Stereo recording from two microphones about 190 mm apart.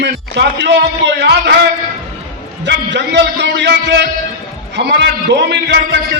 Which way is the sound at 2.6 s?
65° right (ahead or behind).